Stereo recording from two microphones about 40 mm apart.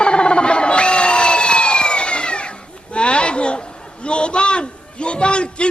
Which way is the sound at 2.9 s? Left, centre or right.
Left.